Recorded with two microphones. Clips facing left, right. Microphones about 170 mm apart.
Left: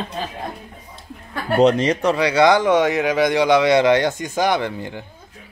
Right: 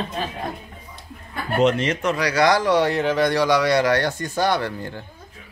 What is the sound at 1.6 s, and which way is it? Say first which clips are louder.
Speech: left 4 dB; 35° left (ahead or behind).